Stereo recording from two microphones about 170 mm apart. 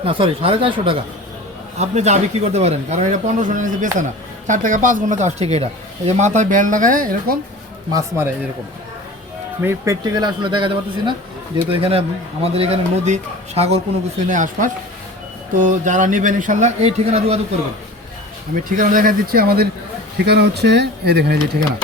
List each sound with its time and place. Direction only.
0.0 s a man's voice: 35° right (ahead or behind)
1.8 s a man's voice: 40° right (ahead or behind); by 7.3 s 55° right (ahead or behind)
7.9 s speech: 15° right (ahead or behind)
9.6 s a man's voice: 15° right (ahead or behind); by 17.4 s 40° right (ahead or behind)
18.8 s speech: 50° right (ahead or behind)
20.2 s speech: 75° right (ahead or behind)